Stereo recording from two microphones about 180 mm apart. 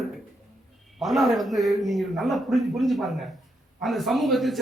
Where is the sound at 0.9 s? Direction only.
Centre (ahead or behind).